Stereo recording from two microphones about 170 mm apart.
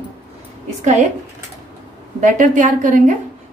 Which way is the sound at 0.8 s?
45° right (ahead or behind).